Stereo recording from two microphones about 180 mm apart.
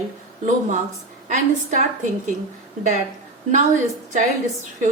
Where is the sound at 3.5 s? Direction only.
45° right (ahead or behind).